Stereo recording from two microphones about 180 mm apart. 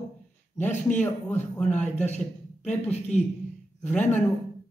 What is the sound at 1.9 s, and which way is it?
A man's voice, 40° left (ahead or behind).